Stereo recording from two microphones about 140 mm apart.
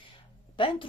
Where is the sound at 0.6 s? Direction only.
40° left (ahead or behind).